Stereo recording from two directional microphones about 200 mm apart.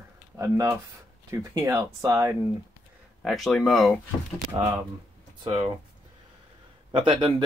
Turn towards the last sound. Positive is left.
turn(degrees=-25)  # may be behind; listen again after turning